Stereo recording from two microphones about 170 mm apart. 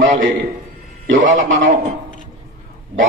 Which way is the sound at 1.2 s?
50° right (ahead or behind).